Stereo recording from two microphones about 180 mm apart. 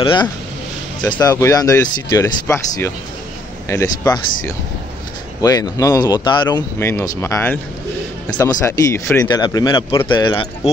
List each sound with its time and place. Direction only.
0.0 s speech: 25° left (ahead or behind)
6.8 s speech: 15° left (ahead or behind)